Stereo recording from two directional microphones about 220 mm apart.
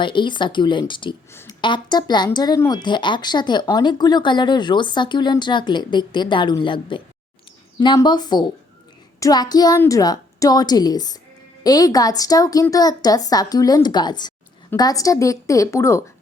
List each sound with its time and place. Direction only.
0.0 s speech: 20° left (ahead or behind)
1.3 s a woman's voice: 10° left (ahead or behind)